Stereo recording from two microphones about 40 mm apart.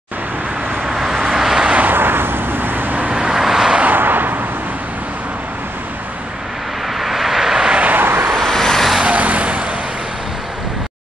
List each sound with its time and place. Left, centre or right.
0.8 s vehicle: centre
1.9 s vehicle: right
3.2 s vehicle: centre
3.8 s a sound: right
7.0 s vehicle: centre
8.0 s vehicle: right
8.3 s vehicle: centre
9.0 s vehicle: right